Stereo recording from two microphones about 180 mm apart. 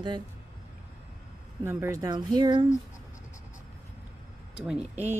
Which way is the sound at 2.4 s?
25° right (ahead or behind).